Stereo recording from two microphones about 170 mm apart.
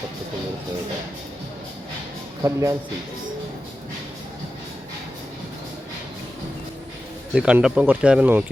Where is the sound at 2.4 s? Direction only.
20° right (ahead or behind).